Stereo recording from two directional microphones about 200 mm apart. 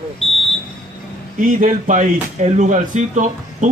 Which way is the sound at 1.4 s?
40° right (ahead or behind).